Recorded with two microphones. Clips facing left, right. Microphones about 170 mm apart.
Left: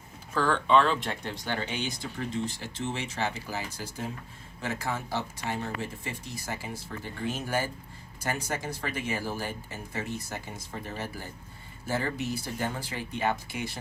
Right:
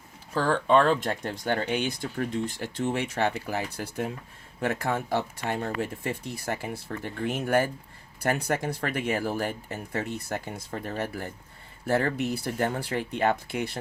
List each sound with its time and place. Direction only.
0.3 s speech: 40° right (ahead or behind); by 13.7 s 60° right (ahead or behind)